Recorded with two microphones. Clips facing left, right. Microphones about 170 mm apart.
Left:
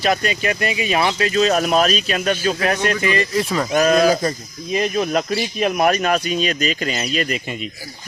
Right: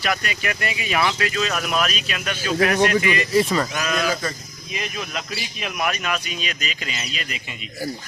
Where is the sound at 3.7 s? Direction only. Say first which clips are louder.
Left 9 dB; 40° left (ahead or behind).